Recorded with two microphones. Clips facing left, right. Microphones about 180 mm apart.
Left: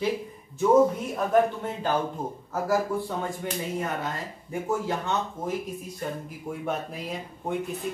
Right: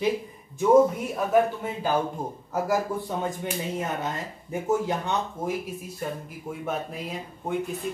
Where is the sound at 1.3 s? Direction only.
5° right (ahead or behind).